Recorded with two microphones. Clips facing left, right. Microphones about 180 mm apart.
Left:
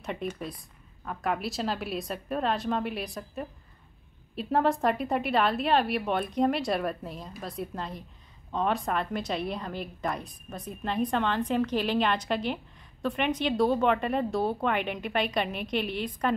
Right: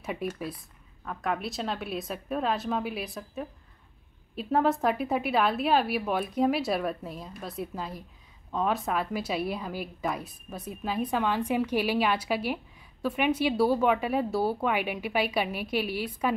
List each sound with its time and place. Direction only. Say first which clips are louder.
0.0 s a woman's voice: right 1 dB; 5° right (ahead or behind)